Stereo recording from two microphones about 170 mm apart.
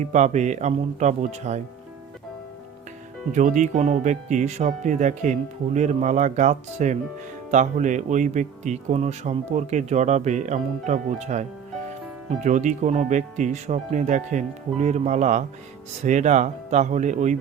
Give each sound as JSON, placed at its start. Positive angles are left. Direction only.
{"t": 0.0, "sound": "speech", "side_deg": -45}
{"t": 3.3, "sound": "speech", "side_deg": -45}